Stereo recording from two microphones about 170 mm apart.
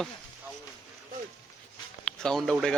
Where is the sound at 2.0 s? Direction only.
5° left (ahead or behind).